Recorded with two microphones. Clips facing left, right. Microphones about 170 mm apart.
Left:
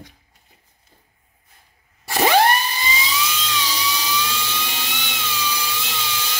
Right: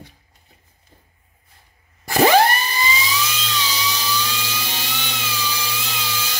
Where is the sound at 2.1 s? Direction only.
50° right (ahead or behind).